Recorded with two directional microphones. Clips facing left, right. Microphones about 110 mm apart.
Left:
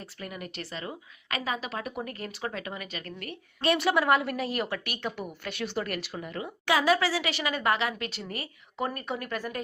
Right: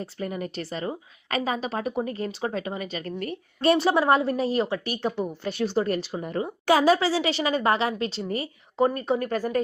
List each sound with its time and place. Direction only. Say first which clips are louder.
0.0 s a woman's voice: right 8 dB; 30° right (ahead or behind)